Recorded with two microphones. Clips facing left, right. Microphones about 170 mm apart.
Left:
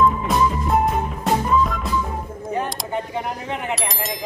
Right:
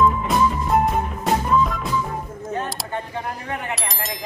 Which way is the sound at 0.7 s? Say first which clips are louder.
Even; centre (ahead or behind).